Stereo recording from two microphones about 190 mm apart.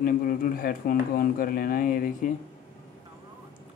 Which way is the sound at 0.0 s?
50° left (ahead or behind).